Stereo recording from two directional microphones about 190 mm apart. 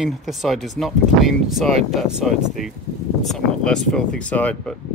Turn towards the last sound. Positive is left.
turn(degrees=5)  # may be behind; listen again after turning